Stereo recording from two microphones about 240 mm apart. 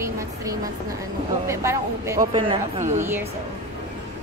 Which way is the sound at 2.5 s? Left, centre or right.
Right.